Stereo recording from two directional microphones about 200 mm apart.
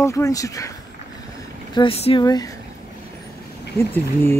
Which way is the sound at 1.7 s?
30° left (ahead or behind).